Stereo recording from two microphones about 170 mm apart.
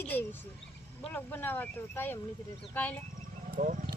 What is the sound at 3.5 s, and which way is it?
Speech, 50° right (ahead or behind).